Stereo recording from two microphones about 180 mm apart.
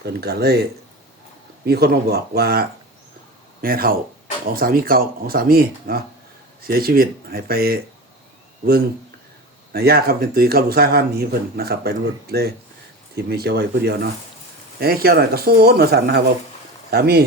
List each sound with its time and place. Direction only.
0.0 s speech: 60° right (ahead or behind)
9.7 s speech: 60° right (ahead or behind)